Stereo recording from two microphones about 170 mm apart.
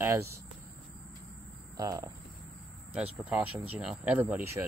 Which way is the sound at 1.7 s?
20° right (ahead or behind).